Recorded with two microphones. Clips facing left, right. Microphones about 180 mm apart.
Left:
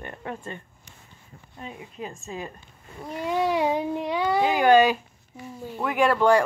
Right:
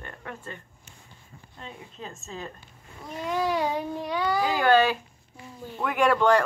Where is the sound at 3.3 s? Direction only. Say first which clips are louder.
Left 3 dB; 25° left (ahead or behind); by 6.4 s 10° left (ahead or behind).